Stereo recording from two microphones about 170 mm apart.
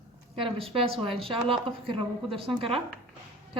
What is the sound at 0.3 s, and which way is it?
A woman's voice, 35° right (ahead or behind).